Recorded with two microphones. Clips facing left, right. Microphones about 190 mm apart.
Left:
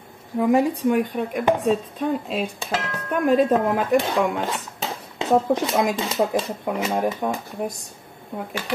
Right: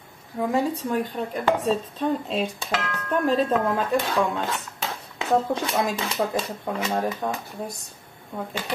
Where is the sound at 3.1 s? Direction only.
15° left (ahead or behind).